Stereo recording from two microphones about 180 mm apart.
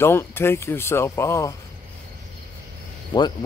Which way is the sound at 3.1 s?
25° left (ahead or behind).